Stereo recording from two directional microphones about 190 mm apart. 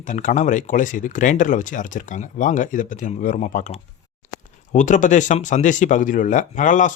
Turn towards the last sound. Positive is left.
turn(degrees=40)  # may be behind; listen again after turning